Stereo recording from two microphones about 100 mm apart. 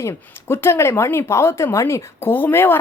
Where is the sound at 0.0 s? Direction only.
25° left (ahead or behind).